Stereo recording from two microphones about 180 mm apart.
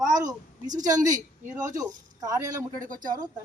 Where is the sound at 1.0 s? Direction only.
20° right (ahead or behind).